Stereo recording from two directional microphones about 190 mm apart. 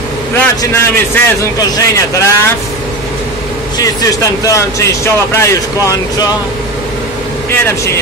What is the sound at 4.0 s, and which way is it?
Speech, 15° left (ahead or behind).